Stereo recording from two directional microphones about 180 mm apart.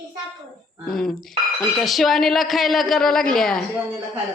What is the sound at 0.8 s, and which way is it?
Speech, centre (ahead or behind).